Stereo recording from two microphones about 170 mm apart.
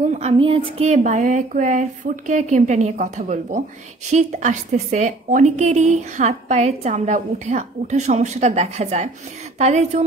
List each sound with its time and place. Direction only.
0.1 s a woman's voice: 40° right (ahead or behind)